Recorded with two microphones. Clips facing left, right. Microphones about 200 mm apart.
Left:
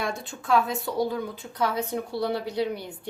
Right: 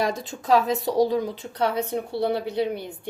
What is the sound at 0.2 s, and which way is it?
Speech, 90° right.